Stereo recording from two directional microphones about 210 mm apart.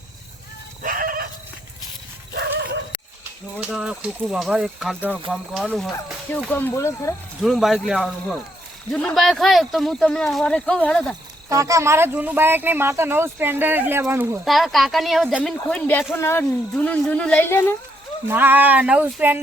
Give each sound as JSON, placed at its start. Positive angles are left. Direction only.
{"t": 0.8, "sound": "chicken", "side_deg": -40}
{"t": 3.6, "sound": "speech", "side_deg": -5}
{"t": 7.4, "sound": "speech", "side_deg": 0}
{"t": 11.4, "sound": "speech", "side_deg": -15}
{"t": 14.4, "sound": "speech", "side_deg": 0}
{"t": 18.3, "sound": "speech", "side_deg": -10}